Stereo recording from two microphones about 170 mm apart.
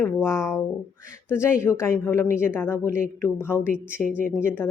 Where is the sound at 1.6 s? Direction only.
15° left (ahead or behind).